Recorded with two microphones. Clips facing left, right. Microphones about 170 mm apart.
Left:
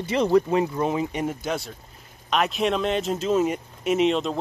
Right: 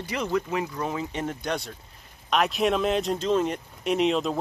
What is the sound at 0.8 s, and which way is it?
Speech, 15° left (ahead or behind).